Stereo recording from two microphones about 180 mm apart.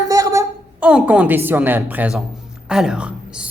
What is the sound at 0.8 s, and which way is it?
A woman's voice, 5° right (ahead or behind).